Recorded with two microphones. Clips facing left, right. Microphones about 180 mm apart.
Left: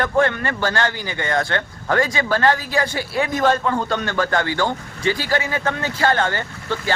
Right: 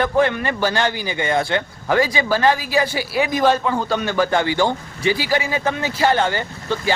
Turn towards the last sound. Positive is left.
turn(degrees=-15)  # may be behind; listen again after turning